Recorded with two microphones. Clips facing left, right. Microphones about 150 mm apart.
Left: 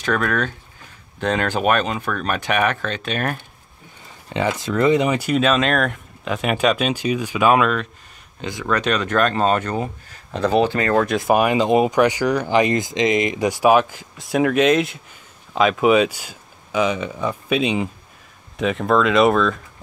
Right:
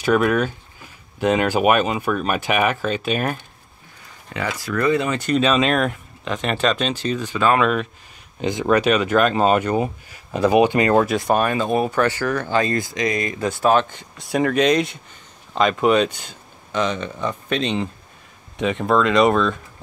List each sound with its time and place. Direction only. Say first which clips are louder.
0.0 s speech: right 4 dB; 10° right (ahead or behind)
4.3 s speech: left 4 dB; 25° left (ahead or behind)
7.6 s speech: right 1 dB; 5° right (ahead or behind)
8.4 s speech: right 5 dB; 20° right (ahead or behind)
11.1 s speech: left 1 dB; centre (ahead or behind)
11.3 s speech: left 5 dB; 15° left (ahead or behind)